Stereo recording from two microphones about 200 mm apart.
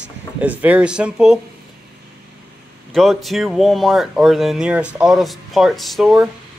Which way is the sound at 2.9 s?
Centre (ahead or behind).